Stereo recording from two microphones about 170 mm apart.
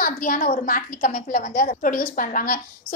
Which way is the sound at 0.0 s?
55° left (ahead or behind).